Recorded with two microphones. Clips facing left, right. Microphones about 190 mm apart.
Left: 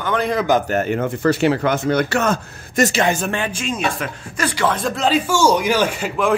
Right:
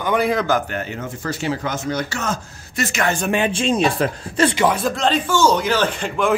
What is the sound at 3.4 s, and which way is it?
Speech, 30° right (ahead or behind).